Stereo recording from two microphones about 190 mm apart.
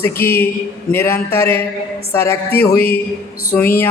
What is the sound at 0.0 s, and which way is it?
A man's voice, 10° left (ahead or behind).